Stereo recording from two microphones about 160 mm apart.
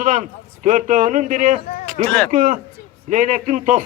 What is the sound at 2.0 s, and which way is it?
Speech, 5° left (ahead or behind).